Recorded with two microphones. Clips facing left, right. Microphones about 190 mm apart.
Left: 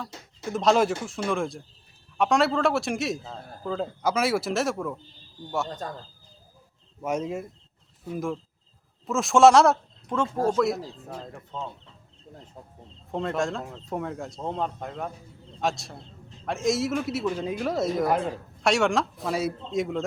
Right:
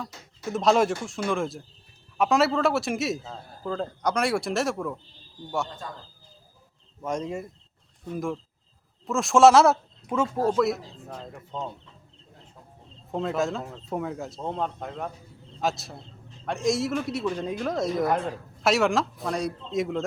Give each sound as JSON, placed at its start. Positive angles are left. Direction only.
{"t": 0.5, "sound": "a man's voice", "side_deg": 0}
{"t": 5.6, "sound": "speech", "side_deg": 40}
{"t": 7.0, "sound": "a man's voice", "side_deg": 5}
{"t": 13.1, "sound": "a man's voice", "side_deg": 0}